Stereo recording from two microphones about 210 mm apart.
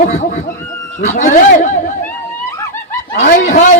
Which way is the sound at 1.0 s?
35° left (ahead or behind).